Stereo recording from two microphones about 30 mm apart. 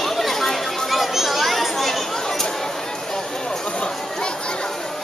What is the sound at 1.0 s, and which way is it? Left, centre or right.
Children playing, centre.